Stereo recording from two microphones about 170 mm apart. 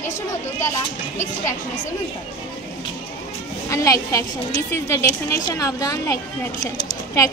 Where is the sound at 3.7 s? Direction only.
20° left (ahead or behind).